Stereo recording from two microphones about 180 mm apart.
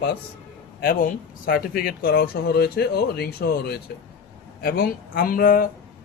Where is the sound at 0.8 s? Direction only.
55° left (ahead or behind).